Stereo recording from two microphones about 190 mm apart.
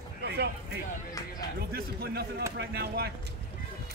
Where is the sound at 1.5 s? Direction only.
55° right (ahead or behind).